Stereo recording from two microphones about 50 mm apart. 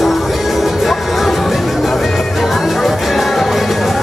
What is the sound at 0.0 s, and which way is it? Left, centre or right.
Music, centre.